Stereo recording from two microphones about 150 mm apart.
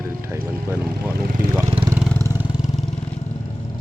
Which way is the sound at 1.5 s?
15° right (ahead or behind).